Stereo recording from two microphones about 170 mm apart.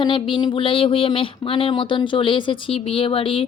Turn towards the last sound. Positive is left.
turn(degrees=30)  # may be behind; listen again after turning